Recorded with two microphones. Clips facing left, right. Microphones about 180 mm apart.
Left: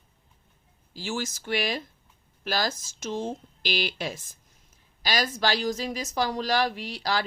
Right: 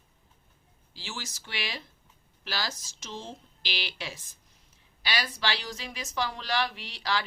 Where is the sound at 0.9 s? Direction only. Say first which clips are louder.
Left 10 dB; 45° left (ahead or behind).